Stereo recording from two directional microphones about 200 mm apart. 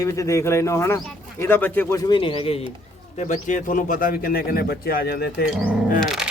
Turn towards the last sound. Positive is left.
turn(degrees=0)  # may be behind; listen again after turning